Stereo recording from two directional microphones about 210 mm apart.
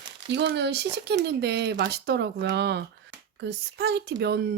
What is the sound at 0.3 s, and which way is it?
Speech, 55° right (ahead or behind).